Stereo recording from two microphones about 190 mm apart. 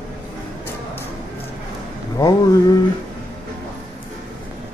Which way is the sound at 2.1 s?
20° left (ahead or behind).